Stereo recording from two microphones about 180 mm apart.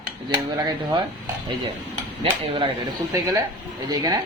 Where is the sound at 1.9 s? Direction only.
30° right (ahead or behind).